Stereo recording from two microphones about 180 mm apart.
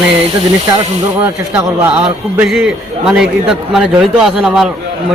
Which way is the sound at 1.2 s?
10° right (ahead or behind).